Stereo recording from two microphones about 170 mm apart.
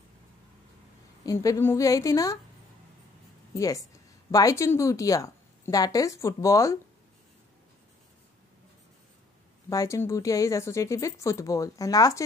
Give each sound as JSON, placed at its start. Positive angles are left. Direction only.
{"t": 1.2, "sound": "a woman's voice", "side_deg": 20}
{"t": 3.5, "sound": "a woman's voice", "side_deg": 20}
{"t": 9.7, "sound": "a woman's voice", "side_deg": 20}